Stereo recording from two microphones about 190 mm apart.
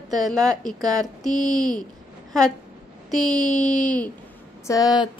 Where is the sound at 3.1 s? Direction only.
Centre (ahead or behind).